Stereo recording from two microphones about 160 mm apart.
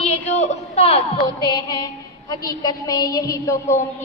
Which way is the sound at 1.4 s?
25° left (ahead or behind).